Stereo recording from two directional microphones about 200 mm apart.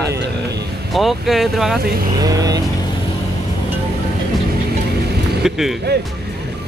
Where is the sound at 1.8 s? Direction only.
50° right (ahead or behind).